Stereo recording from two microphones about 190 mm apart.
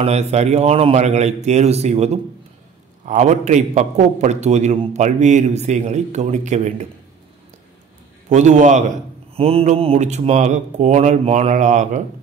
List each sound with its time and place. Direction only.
0.0 s a man's voice: 35° right (ahead or behind)
8.3 s a man's voice: 40° right (ahead or behind)